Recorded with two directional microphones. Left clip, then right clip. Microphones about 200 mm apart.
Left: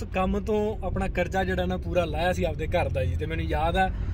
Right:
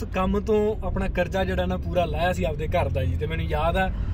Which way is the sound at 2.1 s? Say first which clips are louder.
Right 1 dB; 15° left (ahead or behind).